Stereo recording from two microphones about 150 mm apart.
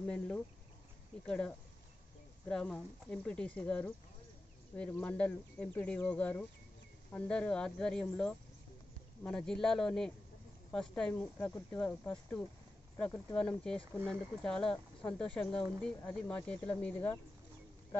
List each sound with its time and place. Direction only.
0.0 s a man's voice: 5° left (ahead or behind)